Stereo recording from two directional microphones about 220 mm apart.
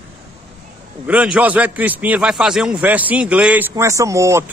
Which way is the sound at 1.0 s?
5° right (ahead or behind).